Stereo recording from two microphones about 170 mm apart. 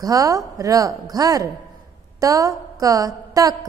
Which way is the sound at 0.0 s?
20° right (ahead or behind).